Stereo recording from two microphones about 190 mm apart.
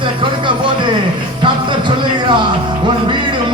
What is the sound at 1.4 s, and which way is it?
Music, 25° right (ahead or behind).